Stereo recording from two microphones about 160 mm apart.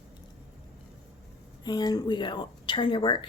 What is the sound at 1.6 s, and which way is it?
Speech, 25° left (ahead or behind).